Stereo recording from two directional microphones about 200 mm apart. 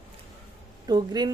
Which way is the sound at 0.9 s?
20° right (ahead or behind).